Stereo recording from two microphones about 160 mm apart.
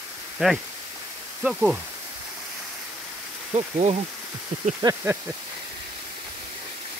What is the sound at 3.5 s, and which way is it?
Speech, 45° right (ahead or behind).